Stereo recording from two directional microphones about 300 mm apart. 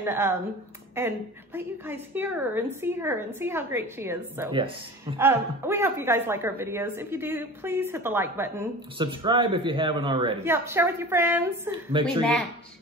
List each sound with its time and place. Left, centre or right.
0.0 s a woman's voice: centre